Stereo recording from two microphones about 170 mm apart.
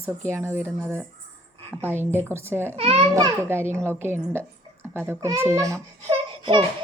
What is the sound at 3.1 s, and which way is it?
A woman's voice, 20° right (ahead or behind).